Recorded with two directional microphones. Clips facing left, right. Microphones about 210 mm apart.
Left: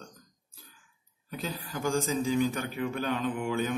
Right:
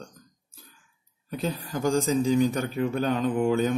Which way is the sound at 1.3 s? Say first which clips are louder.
Right 6 dB; 40° right (ahead or behind).